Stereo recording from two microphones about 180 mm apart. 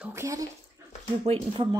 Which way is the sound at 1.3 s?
35° right (ahead or behind).